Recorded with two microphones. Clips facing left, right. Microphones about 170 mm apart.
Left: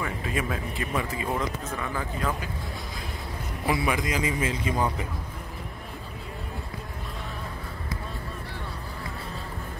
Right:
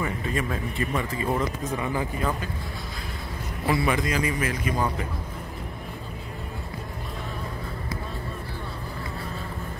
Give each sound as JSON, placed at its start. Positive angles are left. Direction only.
{"t": 0.3, "sound": "a man's voice", "side_deg": 5}
{"t": 1.6, "sound": "speech", "side_deg": -15}
{"t": 3.6, "sound": "a man's voice", "side_deg": 10}